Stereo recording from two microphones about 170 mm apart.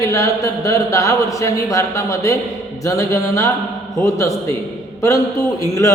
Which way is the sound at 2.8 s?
20° left (ahead or behind).